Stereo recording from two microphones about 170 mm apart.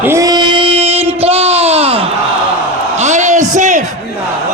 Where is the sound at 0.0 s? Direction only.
15° right (ahead or behind); by 3.8 s 45° right (ahead or behind).